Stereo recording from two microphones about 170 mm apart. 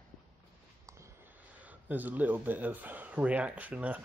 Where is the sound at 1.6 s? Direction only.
10° right (ahead or behind).